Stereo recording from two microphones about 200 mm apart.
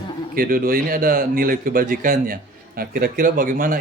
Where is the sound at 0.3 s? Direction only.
45° right (ahead or behind).